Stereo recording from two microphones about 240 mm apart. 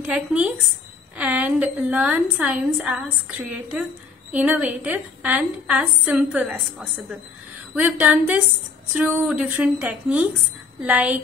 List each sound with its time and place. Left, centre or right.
0.0 s a woman's voice: centre
9.4 s a woman's voice: centre